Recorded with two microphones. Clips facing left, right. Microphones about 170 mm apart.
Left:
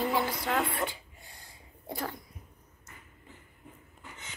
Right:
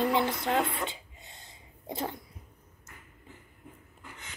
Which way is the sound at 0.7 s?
20° right (ahead or behind).